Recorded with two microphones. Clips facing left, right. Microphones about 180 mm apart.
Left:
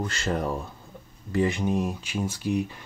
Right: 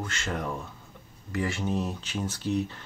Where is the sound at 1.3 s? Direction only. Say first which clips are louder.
Left 5 dB; 20° left (ahead or behind).